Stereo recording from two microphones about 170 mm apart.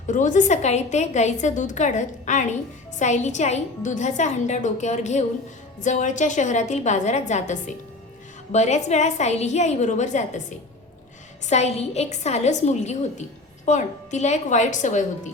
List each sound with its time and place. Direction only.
0.1 s a woman's voice: 45° left (ahead or behind)
11.4 s a woman's voice: 40° left (ahead or behind)